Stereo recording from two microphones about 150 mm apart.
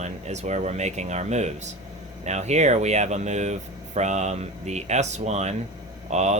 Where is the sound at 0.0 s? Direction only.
50° right (ahead or behind).